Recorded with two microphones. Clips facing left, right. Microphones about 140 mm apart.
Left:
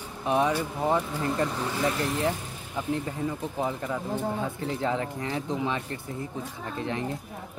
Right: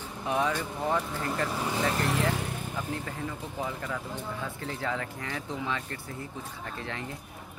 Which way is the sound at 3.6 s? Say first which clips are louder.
Left 4 dB; 20° left (ahead or behind).